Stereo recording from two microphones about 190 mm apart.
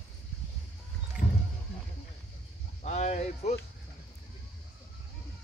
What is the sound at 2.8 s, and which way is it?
Speech, 35° left (ahead or behind).